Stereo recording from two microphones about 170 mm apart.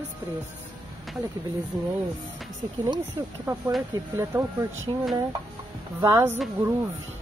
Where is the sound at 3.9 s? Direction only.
15° right (ahead or behind).